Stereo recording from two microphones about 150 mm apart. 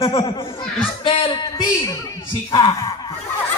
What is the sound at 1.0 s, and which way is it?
Speech, 35° left (ahead or behind).